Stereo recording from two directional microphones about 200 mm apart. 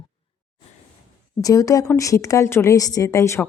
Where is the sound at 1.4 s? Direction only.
15° left (ahead or behind).